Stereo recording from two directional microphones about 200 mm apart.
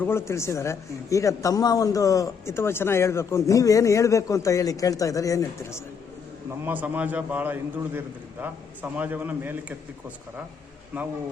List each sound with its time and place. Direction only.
0.0 s a man's voice: 10° left (ahead or behind)
6.7 s a man's voice: 10° right (ahead or behind)
10.9 s a man's voice: 10° right (ahead or behind)